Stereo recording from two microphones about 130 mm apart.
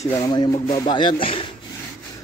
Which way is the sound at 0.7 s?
35° left (ahead or behind).